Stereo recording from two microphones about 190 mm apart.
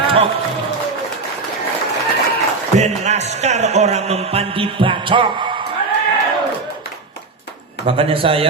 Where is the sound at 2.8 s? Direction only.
35° right (ahead or behind).